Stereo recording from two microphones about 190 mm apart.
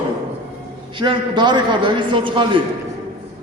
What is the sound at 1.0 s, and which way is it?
A man's voice, 25° right (ahead or behind).